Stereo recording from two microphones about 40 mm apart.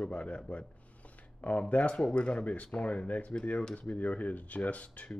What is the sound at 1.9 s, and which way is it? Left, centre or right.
Speech, left.